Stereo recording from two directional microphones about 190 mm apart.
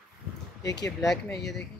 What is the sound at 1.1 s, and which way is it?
Speech, centre (ahead or behind).